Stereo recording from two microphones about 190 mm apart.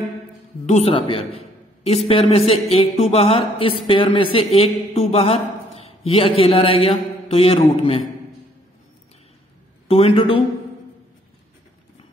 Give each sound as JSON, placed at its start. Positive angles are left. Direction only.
{"t": 0.7, "sound": "a man's voice", "side_deg": 35}
{"t": 9.8, "sound": "a man's voice", "side_deg": 30}